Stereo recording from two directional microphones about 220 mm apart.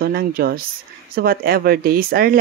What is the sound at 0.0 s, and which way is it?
Speech, 45° right (ahead or behind).